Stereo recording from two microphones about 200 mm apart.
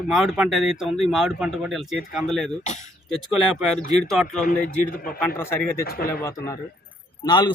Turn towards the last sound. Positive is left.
turn(degrees=20)  # may be behind; listen again after turning